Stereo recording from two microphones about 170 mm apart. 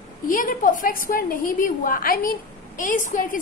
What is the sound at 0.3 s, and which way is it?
A woman's voice, 50° left (ahead or behind).